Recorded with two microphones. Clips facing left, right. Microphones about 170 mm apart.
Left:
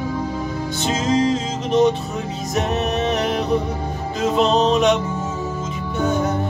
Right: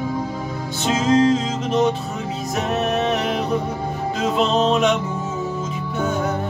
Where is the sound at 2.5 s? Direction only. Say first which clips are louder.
Even; centre (ahead or behind).